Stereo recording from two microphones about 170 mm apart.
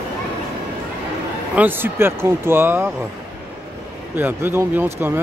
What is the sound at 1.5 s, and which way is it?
Speech, 10° right (ahead or behind).